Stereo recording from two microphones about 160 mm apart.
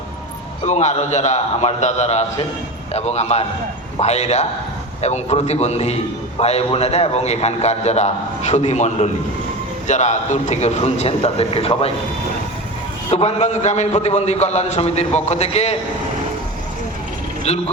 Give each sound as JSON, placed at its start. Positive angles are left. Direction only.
{"t": 0.6, "sound": "a man's voice", "side_deg": 45}
{"t": 13.1, "sound": "a man's voice", "side_deg": 40}